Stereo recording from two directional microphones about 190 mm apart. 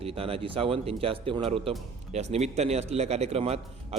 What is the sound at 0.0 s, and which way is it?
A man's voice, 30° right (ahead or behind).